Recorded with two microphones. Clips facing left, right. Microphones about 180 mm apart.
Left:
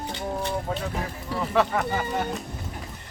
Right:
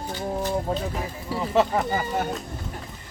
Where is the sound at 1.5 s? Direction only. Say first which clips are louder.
Right 2 dB; 25° right (ahead or behind).